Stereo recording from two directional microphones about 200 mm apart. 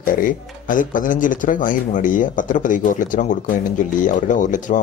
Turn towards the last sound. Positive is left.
turn(degrees=40)  # may be behind; listen again after turning